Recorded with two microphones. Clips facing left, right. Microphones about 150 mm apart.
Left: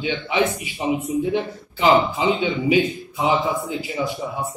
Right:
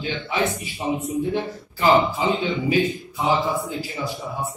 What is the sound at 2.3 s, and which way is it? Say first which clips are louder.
Speech: left 2 dB; 15° left (ahead or behind).